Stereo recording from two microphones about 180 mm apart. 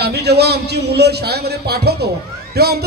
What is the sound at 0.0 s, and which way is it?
A man's voice, 65° right (ahead or behind).